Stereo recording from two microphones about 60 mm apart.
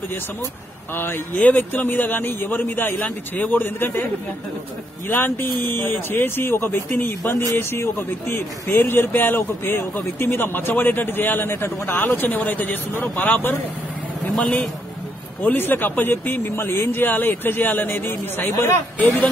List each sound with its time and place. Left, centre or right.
0.9 s speech: left
5.0 s speech: left
14.3 s a man's voice: centre
15.4 s speech: left
17.0 s speech: left